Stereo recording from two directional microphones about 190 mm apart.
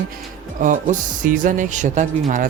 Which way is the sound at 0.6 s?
45° right (ahead or behind).